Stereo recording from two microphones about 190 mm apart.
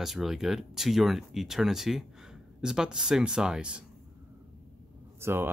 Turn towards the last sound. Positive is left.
turn(degrees=-10)  # may be behind; listen again after turning